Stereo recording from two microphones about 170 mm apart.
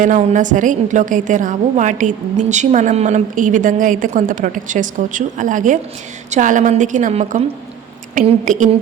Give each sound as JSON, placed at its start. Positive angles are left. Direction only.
{"t": 0.0, "sound": "a woman's voice", "side_deg": -50}